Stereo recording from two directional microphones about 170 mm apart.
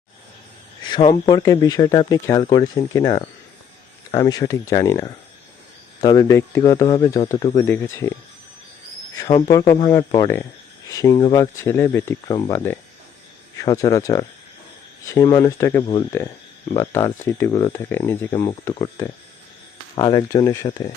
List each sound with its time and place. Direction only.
0.9 s speech: 25° left (ahead or behind)
9.3 s speech: 20° left (ahead or behind)